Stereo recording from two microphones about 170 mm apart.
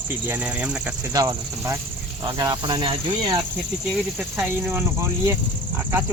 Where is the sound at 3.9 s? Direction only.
5° right (ahead or behind).